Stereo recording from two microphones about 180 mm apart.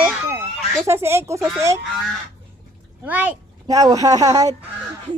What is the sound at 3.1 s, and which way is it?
Speech, 10° right (ahead or behind).